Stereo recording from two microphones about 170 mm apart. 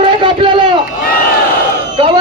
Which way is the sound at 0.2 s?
30° right (ahead or behind).